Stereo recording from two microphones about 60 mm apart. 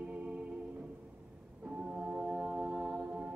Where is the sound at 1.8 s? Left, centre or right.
Centre.